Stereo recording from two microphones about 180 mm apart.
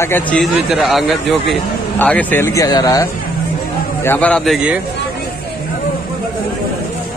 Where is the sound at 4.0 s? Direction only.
10° left (ahead or behind).